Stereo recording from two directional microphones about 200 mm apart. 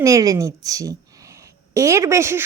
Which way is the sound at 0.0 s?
15° right (ahead or behind).